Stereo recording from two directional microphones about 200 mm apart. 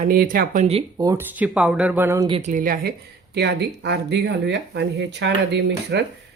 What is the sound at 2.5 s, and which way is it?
Speech, 45° right (ahead or behind).